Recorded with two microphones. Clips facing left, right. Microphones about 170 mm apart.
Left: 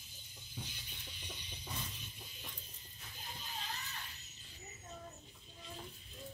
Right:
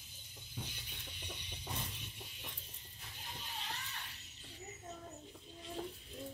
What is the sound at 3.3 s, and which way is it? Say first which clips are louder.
Children playing: even; 70° right (ahead or behind).